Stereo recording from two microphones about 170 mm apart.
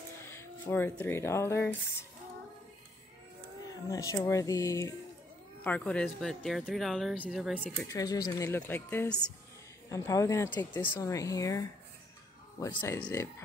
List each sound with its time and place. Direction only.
0.2 s speech: 15° left (ahead or behind)
3.9 s speech: 20° left (ahead or behind)
5.6 s speech: 10° left (ahead or behind)
7.8 s speech: 20° left (ahead or behind)